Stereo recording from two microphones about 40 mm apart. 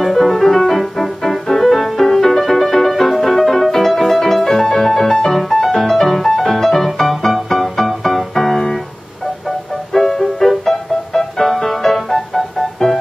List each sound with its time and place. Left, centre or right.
0.0 s music: centre
9.9 s music: centre